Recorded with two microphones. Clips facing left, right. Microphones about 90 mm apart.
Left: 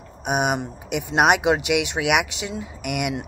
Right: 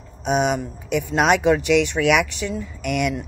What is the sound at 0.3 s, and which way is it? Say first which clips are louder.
Speech: right 2 dB; 60° left (ahead or behind).